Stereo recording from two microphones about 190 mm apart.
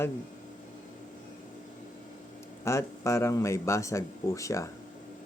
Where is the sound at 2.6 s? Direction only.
15° left (ahead or behind).